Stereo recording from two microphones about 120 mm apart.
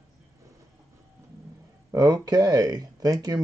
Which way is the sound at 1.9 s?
35° right (ahead or behind).